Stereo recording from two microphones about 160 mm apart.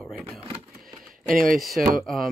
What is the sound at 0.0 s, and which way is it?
Vehicle, 5° right (ahead or behind).